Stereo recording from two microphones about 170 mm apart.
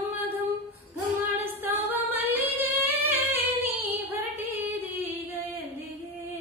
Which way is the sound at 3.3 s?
10° right (ahead or behind).